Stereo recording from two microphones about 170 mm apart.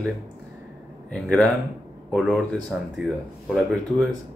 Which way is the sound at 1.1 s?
5° left (ahead or behind).